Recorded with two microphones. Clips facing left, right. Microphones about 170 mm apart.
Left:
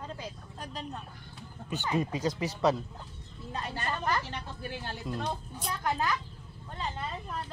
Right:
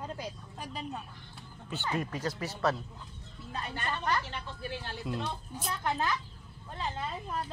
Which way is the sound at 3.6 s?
35° left (ahead or behind).